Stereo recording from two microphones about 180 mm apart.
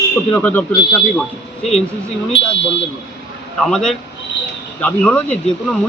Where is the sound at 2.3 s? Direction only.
85° left.